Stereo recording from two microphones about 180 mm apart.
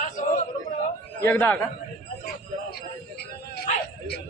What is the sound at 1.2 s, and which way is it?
Speech, 10° left (ahead or behind).